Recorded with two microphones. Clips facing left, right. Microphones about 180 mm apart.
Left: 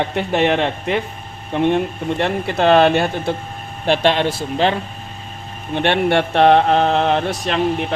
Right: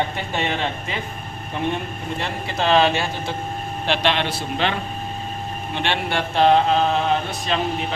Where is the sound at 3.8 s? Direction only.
45° left (ahead or behind).